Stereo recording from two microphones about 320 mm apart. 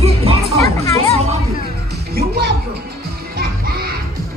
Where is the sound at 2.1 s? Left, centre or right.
Right.